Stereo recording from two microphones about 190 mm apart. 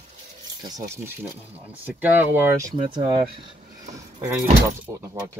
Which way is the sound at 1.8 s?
10° right (ahead or behind).